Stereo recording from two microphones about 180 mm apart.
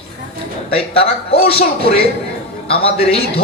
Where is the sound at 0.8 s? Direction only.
35° left (ahead or behind).